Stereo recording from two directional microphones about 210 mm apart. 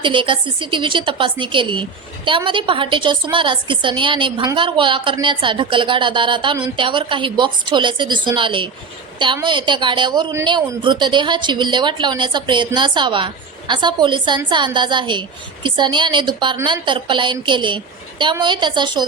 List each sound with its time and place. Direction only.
0.0 s a woman's voice: 25° right (ahead or behind)